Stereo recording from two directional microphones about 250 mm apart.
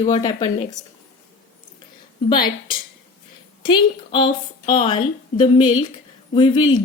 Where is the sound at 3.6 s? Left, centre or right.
Centre.